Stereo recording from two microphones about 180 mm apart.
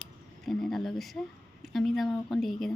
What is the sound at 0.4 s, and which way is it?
Speech, centre (ahead or behind).